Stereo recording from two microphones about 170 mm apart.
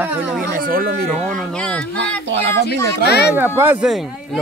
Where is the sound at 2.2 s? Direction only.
90° right.